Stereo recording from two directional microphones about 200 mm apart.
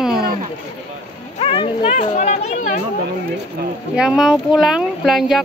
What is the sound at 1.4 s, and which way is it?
Speech, 25° left (ahead or behind).